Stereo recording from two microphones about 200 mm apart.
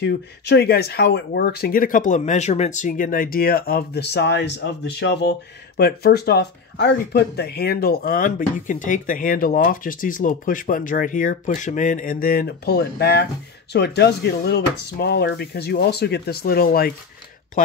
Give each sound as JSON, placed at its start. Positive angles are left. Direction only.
{"t": 0.0, "sound": "speech", "side_deg": 55}